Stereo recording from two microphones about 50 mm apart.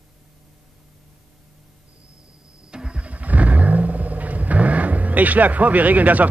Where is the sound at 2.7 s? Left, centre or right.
Right.